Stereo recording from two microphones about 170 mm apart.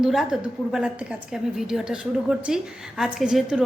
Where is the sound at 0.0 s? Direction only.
Centre (ahead or behind).